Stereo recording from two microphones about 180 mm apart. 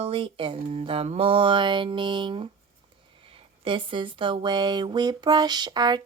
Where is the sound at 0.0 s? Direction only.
30° right (ahead or behind).